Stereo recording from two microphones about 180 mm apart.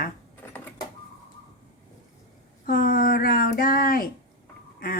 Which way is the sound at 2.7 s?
50° left (ahead or behind).